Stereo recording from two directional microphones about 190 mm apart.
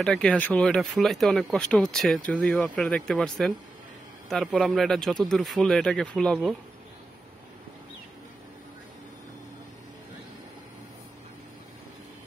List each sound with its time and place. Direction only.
0.0 s speech: 5° left (ahead or behind)